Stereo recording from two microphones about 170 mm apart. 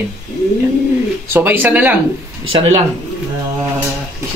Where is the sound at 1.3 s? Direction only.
10° right (ahead or behind).